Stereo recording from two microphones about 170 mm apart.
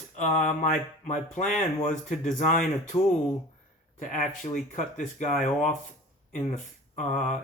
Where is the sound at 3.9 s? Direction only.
50° left (ahead or behind).